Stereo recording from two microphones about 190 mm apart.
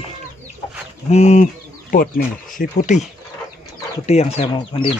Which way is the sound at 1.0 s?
35° left (ahead or behind).